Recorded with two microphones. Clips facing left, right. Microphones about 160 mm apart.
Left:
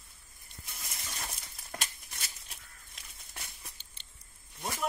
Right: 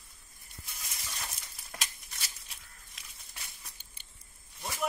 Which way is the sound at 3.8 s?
10° right (ahead or behind).